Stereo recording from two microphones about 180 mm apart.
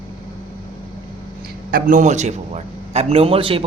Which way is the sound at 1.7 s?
50° right (ahead or behind).